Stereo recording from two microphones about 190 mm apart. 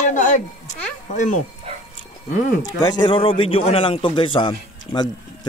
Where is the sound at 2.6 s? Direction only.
20° left (ahead or behind).